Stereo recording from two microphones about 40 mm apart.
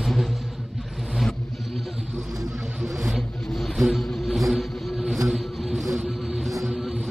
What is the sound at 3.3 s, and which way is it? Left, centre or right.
Vehicle, centre.